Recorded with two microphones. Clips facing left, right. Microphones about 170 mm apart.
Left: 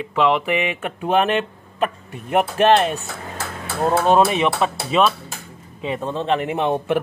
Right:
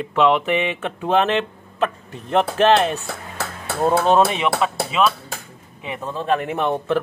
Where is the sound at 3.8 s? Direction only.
5° left (ahead or behind).